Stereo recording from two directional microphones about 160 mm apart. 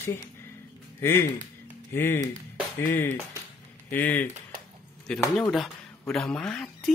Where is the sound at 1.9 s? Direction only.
15° left (ahead or behind).